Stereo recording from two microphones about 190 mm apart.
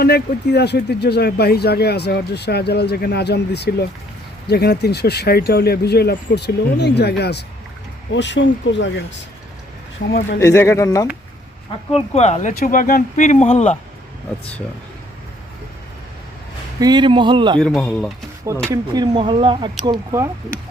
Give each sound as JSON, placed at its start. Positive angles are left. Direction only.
{"t": 0.0, "sound": "speech", "side_deg": 60}
{"t": 8.1, "sound": "speech", "side_deg": 70}
{"t": 10.0, "sound": "speech", "side_deg": 45}
{"t": 10.4, "sound": "speech", "side_deg": 15}
{"t": 11.9, "sound": "speech", "side_deg": 35}
{"t": 16.8, "sound": "speech", "side_deg": -25}
{"t": 17.6, "sound": "speech", "side_deg": 5}
{"t": 18.7, "sound": "speech", "side_deg": -20}